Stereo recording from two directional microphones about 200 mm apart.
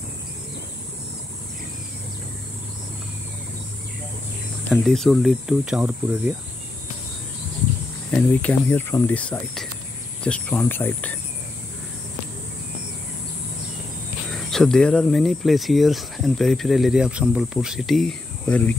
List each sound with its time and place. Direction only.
4.6 s speech: centre (ahead or behind)
8.1 s speech: 5° left (ahead or behind)
14.3 s speech: centre (ahead or behind)